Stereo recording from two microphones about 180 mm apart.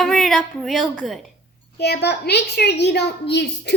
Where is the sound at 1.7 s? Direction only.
65° left (ahead or behind).